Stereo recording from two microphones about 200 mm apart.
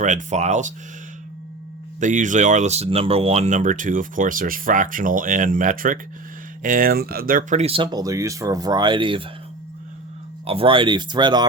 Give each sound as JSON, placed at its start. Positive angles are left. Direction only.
{"t": 0.0, "sound": "speech", "side_deg": -35}
{"t": 2.0, "sound": "speech", "side_deg": -40}
{"t": 7.6, "sound": "speech", "side_deg": -25}
{"t": 10.4, "sound": "speech", "side_deg": -30}